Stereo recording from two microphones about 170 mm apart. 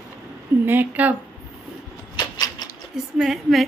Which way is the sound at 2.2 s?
20° left (ahead or behind).